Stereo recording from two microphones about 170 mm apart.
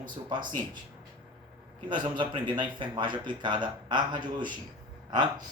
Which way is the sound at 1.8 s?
25° right (ahead or behind).